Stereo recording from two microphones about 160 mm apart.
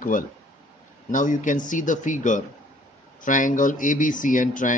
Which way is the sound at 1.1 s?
55° left (ahead or behind).